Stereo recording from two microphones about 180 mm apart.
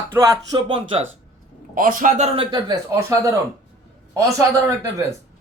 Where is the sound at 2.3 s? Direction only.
25° right (ahead or behind).